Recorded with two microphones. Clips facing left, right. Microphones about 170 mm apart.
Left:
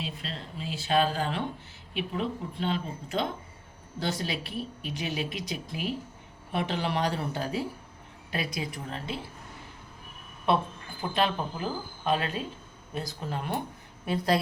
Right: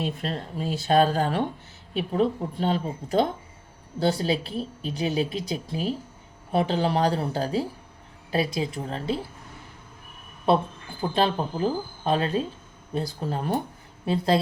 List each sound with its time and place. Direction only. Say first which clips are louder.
0.0 s speech: right 8 dB; 50° right (ahead or behind); by 9.2 s 35° right (ahead or behind)
11.1 s speech: right 4 dB; 30° right (ahead or behind)